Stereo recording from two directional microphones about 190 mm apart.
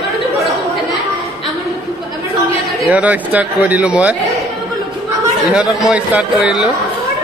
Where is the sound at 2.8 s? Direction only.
5° right (ahead or behind).